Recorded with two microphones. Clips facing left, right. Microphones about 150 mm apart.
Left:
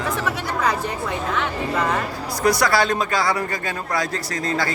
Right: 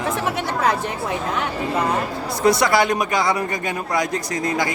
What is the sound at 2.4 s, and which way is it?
A man's voice, 20° right (ahead or behind).